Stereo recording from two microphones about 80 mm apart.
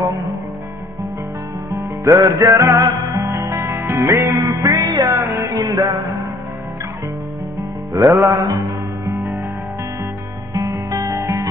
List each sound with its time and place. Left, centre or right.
2.0 s music: right
5.0 s music: right
7.9 s music: right
10.5 s guitar: right